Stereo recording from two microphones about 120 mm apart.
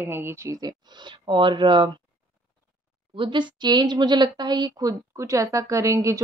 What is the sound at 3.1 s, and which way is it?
A woman's voice, 45° right (ahead or behind).